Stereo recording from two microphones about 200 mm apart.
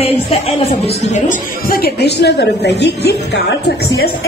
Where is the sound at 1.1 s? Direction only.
45° left (ahead or behind).